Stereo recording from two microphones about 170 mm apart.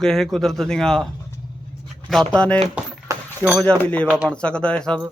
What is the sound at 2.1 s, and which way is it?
Speech, centre (ahead or behind).